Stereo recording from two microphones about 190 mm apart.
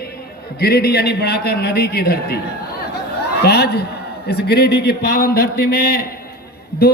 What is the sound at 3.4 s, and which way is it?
A man's voice, 55° left (ahead or behind).